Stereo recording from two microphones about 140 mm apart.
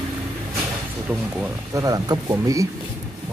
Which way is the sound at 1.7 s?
25° right (ahead or behind).